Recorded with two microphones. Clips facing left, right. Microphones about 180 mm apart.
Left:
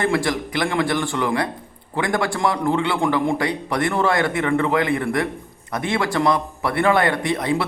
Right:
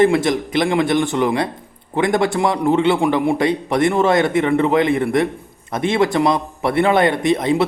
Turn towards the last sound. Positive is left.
turn(degrees=-20)  # may be behind; listen again after turning